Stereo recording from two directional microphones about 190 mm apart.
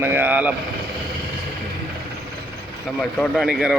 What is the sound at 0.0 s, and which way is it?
Speech, 10° right (ahead or behind).